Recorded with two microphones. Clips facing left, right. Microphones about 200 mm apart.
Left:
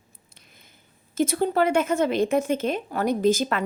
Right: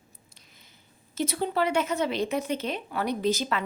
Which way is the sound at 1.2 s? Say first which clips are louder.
Left 5 dB; 50° left (ahead or behind).